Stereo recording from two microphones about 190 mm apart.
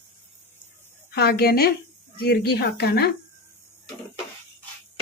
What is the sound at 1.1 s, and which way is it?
A woman's voice, 55° left (ahead or behind).